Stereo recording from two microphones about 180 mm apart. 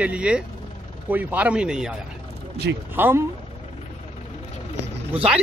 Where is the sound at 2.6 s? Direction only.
70° right (ahead or behind).